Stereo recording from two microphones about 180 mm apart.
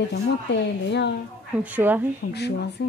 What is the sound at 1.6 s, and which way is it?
Speech, 10° right (ahead or behind).